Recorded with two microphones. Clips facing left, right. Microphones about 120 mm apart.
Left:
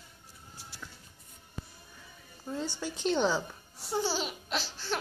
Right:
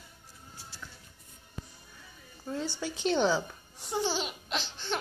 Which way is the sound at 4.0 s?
10° left (ahead or behind).